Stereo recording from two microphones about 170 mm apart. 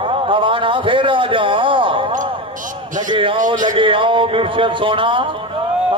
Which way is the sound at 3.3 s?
50° right (ahead or behind).